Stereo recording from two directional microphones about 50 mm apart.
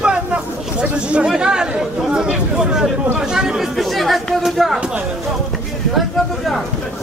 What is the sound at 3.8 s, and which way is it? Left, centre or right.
Speech, centre.